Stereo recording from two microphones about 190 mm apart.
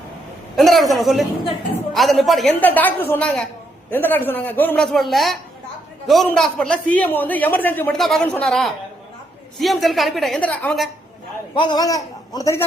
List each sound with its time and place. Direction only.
0.5 s a woman's voice: centre (ahead or behind)
11.5 s a man's voice: 25° left (ahead or behind)